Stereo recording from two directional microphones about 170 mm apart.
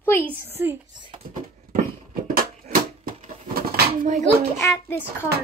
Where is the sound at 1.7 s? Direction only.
60° right (ahead or behind).